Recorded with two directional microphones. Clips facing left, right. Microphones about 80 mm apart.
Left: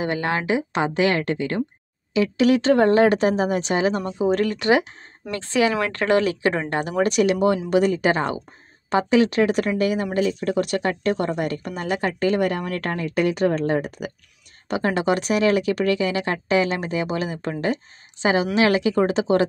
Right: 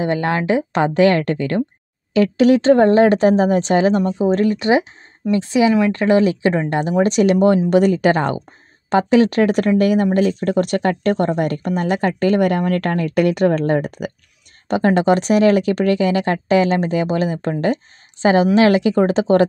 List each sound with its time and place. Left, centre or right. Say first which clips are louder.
0.0 s speech: right 5 dB; right
14.7 s speech: right 6 dB; right